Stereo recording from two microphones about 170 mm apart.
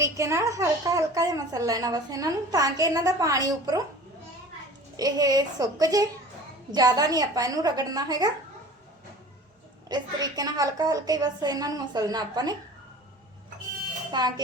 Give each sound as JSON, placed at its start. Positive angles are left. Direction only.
{"t": 0.0, "sound": "a woman's voice", "side_deg": -15}
{"t": 4.9, "sound": "a woman's voice", "side_deg": -20}
{"t": 9.9, "sound": "a woman's voice", "side_deg": -25}
{"t": 14.1, "sound": "a woman's voice", "side_deg": -25}